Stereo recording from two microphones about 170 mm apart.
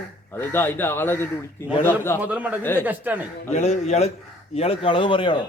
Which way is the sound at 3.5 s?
40° left (ahead or behind).